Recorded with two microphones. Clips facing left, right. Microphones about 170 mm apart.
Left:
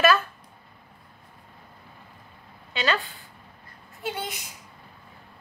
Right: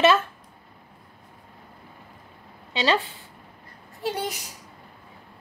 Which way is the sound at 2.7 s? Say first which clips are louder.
Right 4 dB; 25° right (ahead or behind).